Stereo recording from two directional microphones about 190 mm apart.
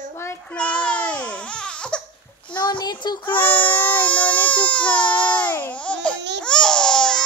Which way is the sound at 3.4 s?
10° left (ahead or behind).